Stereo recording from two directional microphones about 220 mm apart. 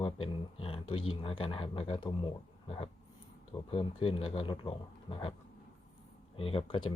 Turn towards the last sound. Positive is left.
turn(degrees=20)  # may be behind; listen again after turning